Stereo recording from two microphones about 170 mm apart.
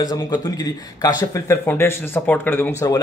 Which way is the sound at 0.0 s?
20° left (ahead or behind).